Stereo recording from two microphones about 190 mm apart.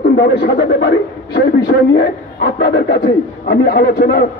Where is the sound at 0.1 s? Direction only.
60° left (ahead or behind).